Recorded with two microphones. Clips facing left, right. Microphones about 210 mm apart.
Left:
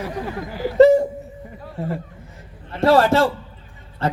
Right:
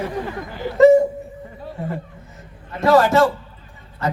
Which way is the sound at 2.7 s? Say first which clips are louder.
Right 1 dB; 30° left (ahead or behind).